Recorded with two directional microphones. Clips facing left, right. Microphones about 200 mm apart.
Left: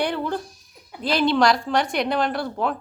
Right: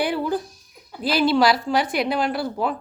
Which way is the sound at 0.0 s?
5° right (ahead or behind).